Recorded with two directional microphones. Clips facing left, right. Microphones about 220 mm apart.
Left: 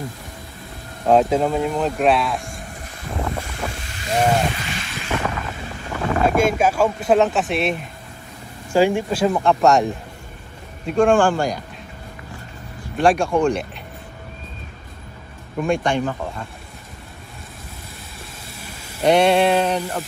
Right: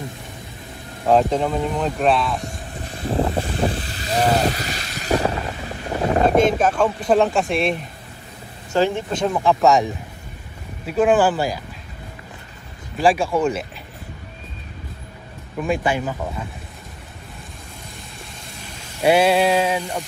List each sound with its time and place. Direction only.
1.0 s speech: centre (ahead or behind)
2.3 s vehicle: 25° left (ahead or behind)
3.0 s a sound: 30° right (ahead or behind)
6.4 s speech: 10° left (ahead or behind)
10.9 s speech: 5° right (ahead or behind)
12.9 s speech: centre (ahead or behind)
15.6 s speech: 5° right (ahead or behind)
19.0 s speech: 5° right (ahead or behind)